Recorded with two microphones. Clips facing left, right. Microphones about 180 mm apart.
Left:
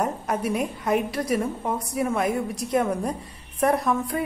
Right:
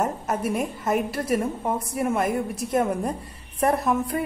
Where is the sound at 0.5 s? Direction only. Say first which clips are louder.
Left 1 dB; centre (ahead or behind).